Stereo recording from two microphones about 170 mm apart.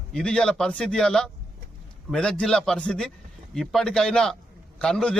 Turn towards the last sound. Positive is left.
turn(degrees=5)  # may be behind; listen again after turning